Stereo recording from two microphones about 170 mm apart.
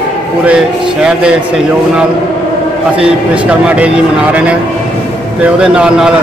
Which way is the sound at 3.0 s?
5° right (ahead or behind).